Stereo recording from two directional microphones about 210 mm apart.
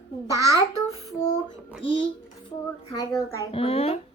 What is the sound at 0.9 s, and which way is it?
Child singing, 30° left (ahead or behind).